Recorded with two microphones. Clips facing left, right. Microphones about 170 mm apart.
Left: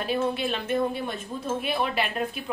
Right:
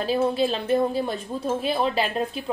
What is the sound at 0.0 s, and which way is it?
A woman's voice, 30° right (ahead or behind).